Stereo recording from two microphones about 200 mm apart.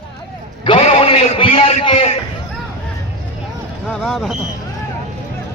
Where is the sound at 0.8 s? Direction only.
30° left (ahead or behind).